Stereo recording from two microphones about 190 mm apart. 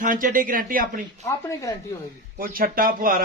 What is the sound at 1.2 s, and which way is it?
Speech, 15° left (ahead or behind).